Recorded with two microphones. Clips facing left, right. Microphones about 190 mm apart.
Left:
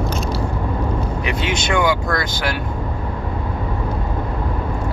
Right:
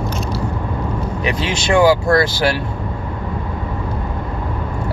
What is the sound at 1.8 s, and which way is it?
Speech, 30° right (ahead or behind).